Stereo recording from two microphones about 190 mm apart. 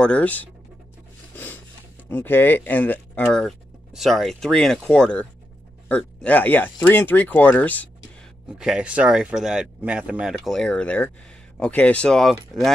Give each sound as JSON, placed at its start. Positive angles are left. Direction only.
{"t": 0.0, "sound": "speech", "side_deg": 5}
{"t": 1.3, "sound": "rub", "side_deg": 10}
{"t": 2.0, "sound": "speech", "side_deg": 10}
{"t": 8.5, "sound": "speech", "side_deg": -5}